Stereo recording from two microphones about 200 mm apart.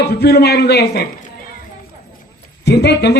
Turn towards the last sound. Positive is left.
turn(degrees=55)  # may be behind; listen again after turning